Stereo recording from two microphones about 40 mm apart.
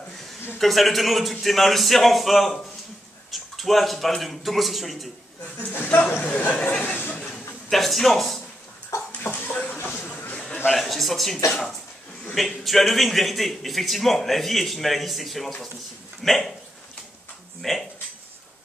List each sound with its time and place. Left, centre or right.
0.6 s a man's voice: centre
5.7 s speech: left
6.2 s speech: left
6.8 s a sound: left
7.7 s a man's voice: centre
9.2 s speech: left
10.7 s a man's voice: centre
12.4 s a man's voice: centre
17.6 s a man's voice: centre